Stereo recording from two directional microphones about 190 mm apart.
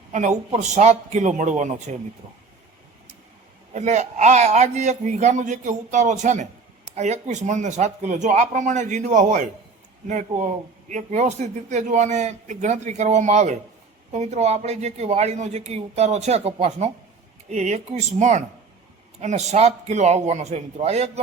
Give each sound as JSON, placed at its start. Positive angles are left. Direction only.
{"t": 0.1, "sound": "a man's voice", "side_deg": -40}
{"t": 3.8, "sound": "a man's voice", "side_deg": -40}